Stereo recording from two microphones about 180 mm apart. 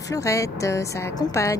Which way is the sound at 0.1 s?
15° left (ahead or behind).